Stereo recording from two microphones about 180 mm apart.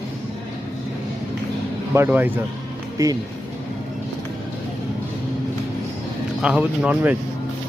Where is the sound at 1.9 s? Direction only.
10° right (ahead or behind).